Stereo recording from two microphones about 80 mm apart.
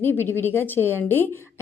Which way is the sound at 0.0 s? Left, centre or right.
Left.